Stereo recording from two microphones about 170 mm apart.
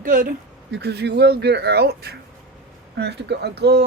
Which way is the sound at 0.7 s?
75° right (ahead or behind).